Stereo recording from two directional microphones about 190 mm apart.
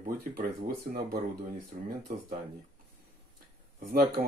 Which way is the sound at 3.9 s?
55° right (ahead or behind).